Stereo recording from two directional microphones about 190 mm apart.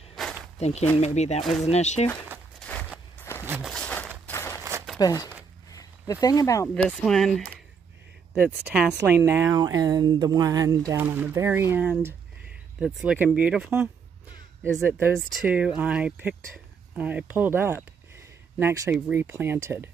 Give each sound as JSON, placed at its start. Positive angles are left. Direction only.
{"t": 0.1, "sound": "a sound", "side_deg": 0}
{"t": 0.6, "sound": "speech", "side_deg": 35}
{"t": 2.6, "sound": "walk", "side_deg": 5}
{"t": 3.2, "sound": "a sound", "side_deg": 15}
{"t": 4.9, "sound": "speech", "side_deg": 20}
{"t": 5.7, "sound": "a sound", "side_deg": 20}
{"t": 6.2, "sound": "speech", "side_deg": 15}
{"t": 6.7, "sound": "speech", "side_deg": 5}
{"t": 8.6, "sound": "speech", "side_deg": -5}